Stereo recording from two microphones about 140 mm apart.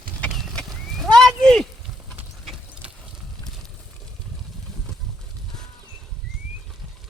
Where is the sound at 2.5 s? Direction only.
5° right (ahead or behind).